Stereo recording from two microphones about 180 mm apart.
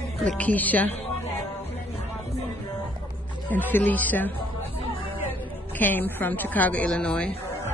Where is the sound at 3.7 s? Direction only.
10° left (ahead or behind).